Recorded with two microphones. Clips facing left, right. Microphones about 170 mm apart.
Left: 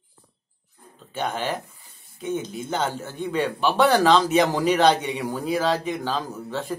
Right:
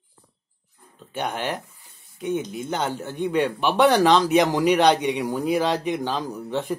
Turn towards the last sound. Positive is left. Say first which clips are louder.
# right 3 dB
turn(degrees=-20)  # may be behind; listen again after turning